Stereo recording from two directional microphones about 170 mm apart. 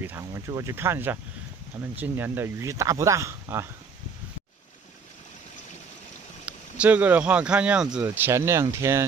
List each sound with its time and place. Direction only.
0.0 s speech: 15° right (ahead or behind)
6.4 s speech: 10° right (ahead or behind)